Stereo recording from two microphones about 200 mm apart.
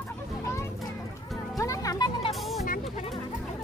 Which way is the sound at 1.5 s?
15° left (ahead or behind).